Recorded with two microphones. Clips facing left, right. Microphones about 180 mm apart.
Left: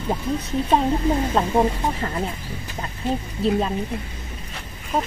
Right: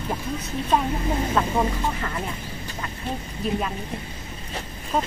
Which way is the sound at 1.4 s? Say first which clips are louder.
Left 2 dB; 25° left (ahead or behind).